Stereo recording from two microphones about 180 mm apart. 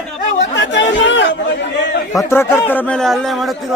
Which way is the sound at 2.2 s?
15° left (ahead or behind).